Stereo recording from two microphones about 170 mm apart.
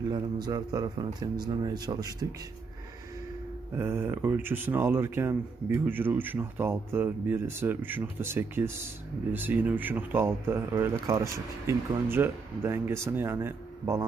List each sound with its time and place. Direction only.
0.1 s speech: 25° right (ahead or behind)
3.7 s speech: 15° right (ahead or behind)